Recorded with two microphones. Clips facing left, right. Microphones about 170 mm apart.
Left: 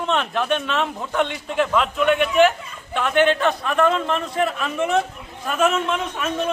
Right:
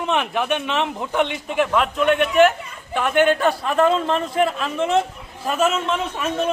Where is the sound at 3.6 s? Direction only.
30° right (ahead or behind).